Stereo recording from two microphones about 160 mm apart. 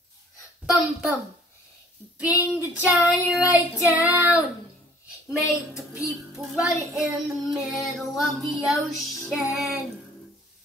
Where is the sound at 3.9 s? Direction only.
10° right (ahead or behind).